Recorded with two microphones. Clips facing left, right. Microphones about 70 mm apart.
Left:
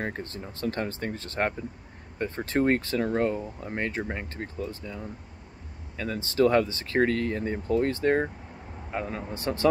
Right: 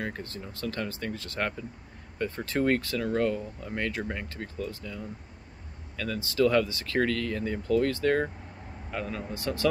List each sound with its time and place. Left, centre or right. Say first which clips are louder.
0.0 s speech: left 2 dB; left